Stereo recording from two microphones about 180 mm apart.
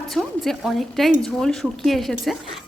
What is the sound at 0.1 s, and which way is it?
A woman's voice, centre (ahead or behind).